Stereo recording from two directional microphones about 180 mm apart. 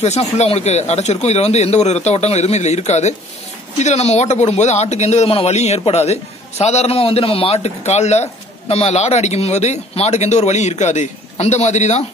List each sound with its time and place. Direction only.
0.0 s a man's voice: 35° left (ahead or behind)